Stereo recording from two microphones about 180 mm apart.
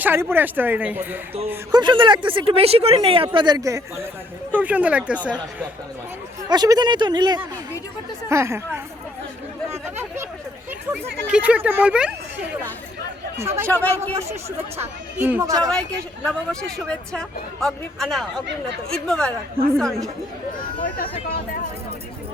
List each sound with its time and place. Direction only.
0.0 s speech: 10° right (ahead or behind)
1.7 s speech: 25° right (ahead or behind); by 5.6 s 10° right (ahead or behind)
6.5 s speech: 20° right (ahead or behind)
9.8 s a sound: 10° right (ahead or behind)
10.9 s speech: 5° right (ahead or behind)
13.7 s speech: 10° left (ahead or behind)
14.8 s speech: 10° right (ahead or behind)
15.7 s speech: 5° left (ahead or behind)